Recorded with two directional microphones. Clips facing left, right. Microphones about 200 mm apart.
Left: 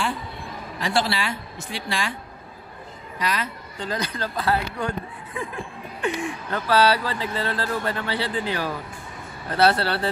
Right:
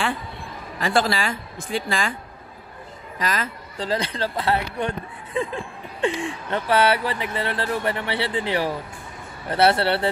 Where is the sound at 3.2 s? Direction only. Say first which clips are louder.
Right 1 dB; 45° right (ahead or behind).